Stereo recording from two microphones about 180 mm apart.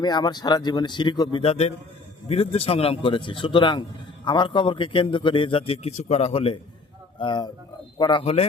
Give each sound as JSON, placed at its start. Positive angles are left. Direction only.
{"t": 0.0, "sound": "a man's voice", "side_deg": 25}